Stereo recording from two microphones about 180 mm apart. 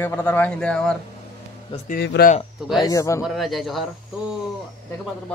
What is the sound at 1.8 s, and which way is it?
Speech, 60° left (ahead or behind).